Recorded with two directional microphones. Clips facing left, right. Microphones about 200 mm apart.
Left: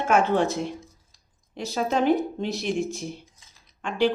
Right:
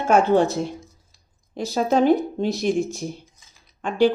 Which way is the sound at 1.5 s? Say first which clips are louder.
Right 5 dB; 35° right (ahead or behind).